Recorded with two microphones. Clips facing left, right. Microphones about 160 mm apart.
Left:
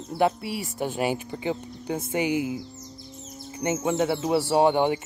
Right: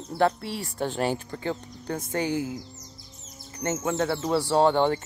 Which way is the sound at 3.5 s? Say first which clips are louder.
Left 2 dB; 15° left (ahead or behind).